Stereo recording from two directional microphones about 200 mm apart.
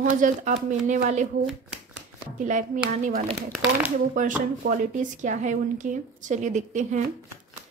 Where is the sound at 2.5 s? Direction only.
40° right (ahead or behind).